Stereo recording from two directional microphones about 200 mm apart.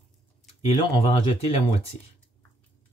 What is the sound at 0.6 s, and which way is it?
Speech, 25° left (ahead or behind).